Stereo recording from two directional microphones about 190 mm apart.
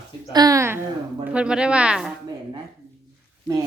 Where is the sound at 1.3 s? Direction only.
5° right (ahead or behind).